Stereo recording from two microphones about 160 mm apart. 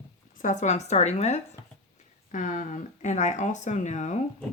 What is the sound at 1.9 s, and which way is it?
Speech, 55° left (ahead or behind).